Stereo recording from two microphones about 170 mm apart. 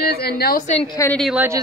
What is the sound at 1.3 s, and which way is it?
Speech, 15° right (ahead or behind).